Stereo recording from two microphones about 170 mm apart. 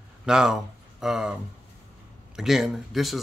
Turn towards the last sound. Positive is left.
turn(degrees=0)  # may be behind; listen again after turning